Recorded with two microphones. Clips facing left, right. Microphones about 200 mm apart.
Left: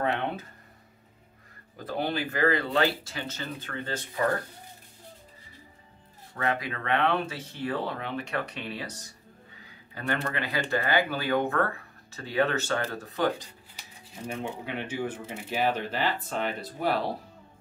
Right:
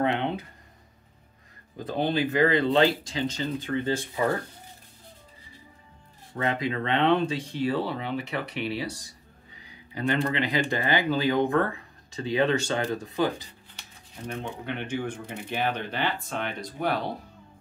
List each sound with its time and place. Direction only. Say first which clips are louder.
0.0 s a sound: right 3 dB; 20° right (ahead or behind)
1.9 s speech: right 4 dB; 20° right (ahead or behind)
6.3 s speech: right 3 dB; 25° right (ahead or behind)
13.7 s speech: left 1 dB; 10° left (ahead or behind)